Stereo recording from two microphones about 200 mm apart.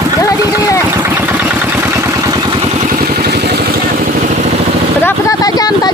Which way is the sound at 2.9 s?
50° right (ahead or behind).